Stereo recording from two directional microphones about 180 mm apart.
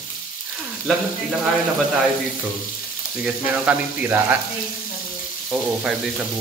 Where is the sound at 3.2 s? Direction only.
10° right (ahead or behind).